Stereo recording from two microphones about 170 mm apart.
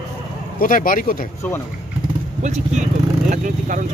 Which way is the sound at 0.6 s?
55° left (ahead or behind).